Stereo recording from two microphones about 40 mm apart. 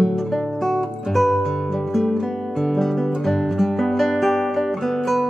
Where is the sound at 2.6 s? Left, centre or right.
Centre.